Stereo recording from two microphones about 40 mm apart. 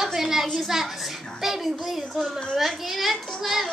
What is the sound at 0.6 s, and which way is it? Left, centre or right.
A child's voice, centre.